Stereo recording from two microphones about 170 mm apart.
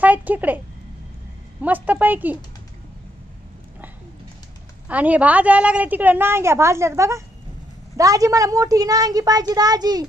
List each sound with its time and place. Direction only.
0.0 s speech: 10° right (ahead or behind)
1.6 s a woman's voice: 10° right (ahead or behind)
4.8 s a woman's voice: 10° right (ahead or behind)